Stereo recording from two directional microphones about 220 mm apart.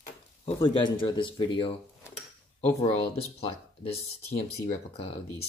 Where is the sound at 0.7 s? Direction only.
20° left (ahead or behind).